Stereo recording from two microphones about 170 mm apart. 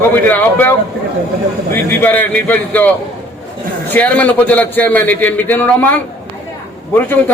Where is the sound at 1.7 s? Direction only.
10° left (ahead or behind).